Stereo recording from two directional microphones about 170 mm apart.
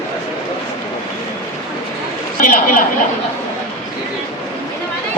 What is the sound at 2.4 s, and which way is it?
Speech, 50° left (ahead or behind).